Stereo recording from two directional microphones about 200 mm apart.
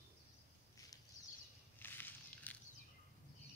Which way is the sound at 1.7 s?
10° left (ahead or behind).